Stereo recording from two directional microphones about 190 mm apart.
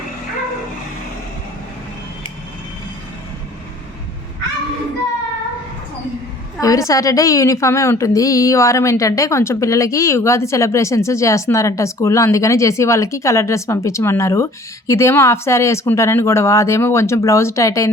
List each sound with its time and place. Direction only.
6.6 s a woman's voice: 15° left (ahead or behind)